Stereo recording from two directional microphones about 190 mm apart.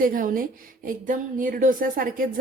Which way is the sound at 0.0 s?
45° right (ahead or behind).